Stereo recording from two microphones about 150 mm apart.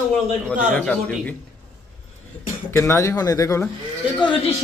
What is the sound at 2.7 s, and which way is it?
Speech, 15° left (ahead or behind).